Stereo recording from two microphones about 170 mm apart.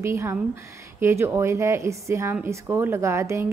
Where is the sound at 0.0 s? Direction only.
15° right (ahead or behind).